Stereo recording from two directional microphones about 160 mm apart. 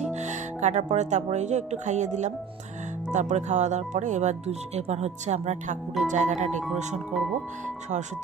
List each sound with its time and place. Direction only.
0.1 s speech: 45° right (ahead or behind)
7.1 s speech: centre (ahead or behind)